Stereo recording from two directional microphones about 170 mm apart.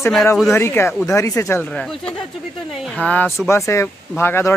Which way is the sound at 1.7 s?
5° left (ahead or behind).